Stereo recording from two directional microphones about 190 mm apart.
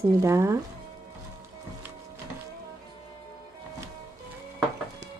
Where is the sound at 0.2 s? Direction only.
15° right (ahead or behind).